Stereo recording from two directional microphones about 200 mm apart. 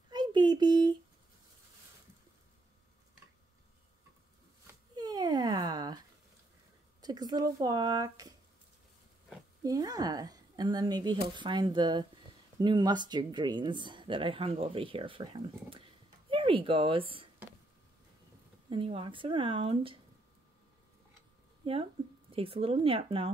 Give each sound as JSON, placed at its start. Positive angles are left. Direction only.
{"t": 0.1, "sound": "a sound", "side_deg": -20}
{"t": 4.9, "sound": "a sound", "side_deg": -20}
{"t": 7.0, "sound": "speech", "side_deg": -20}
{"t": 9.6, "sound": "speech", "side_deg": -20}
{"t": 18.7, "sound": "speech", "side_deg": -25}
{"t": 21.6, "sound": "speech", "side_deg": -25}